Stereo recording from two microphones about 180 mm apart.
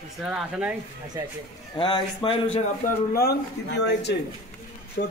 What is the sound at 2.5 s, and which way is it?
Speech, 45° left (ahead or behind).